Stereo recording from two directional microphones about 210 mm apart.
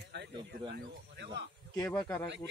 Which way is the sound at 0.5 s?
50° right (ahead or behind).